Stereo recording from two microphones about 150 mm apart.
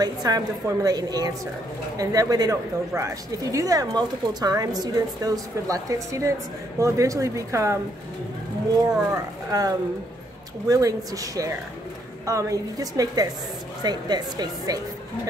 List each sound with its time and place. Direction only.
0.0 s speech: 25° right (ahead or behind)
8.8 s speech: 25° right (ahead or behind)